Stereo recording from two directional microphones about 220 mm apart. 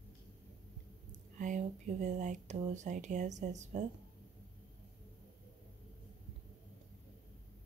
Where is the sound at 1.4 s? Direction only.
35° right (ahead or behind).